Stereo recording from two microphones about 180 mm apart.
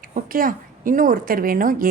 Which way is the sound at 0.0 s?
50° right (ahead or behind).